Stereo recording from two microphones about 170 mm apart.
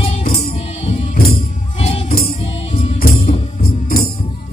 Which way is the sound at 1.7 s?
35° left (ahead or behind).